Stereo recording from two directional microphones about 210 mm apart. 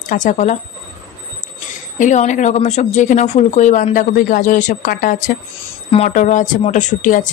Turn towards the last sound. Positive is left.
turn(degrees=40)  # may be behind; listen again after turning